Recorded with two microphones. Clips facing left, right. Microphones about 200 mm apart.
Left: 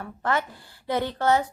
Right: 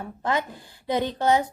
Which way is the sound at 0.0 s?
15° right (ahead or behind).